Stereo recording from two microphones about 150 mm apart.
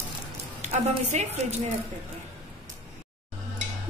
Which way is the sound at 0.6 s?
50° right (ahead or behind).